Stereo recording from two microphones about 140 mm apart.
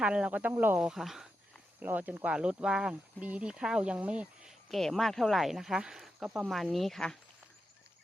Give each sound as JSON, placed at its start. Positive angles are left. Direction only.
{"t": 0.0, "sound": "speech", "side_deg": -5}